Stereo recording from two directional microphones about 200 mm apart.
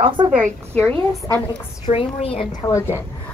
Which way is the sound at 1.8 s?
25° left (ahead or behind).